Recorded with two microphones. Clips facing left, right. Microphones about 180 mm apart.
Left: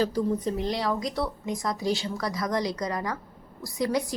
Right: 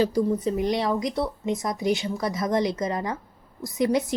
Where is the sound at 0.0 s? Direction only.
10° right (ahead or behind).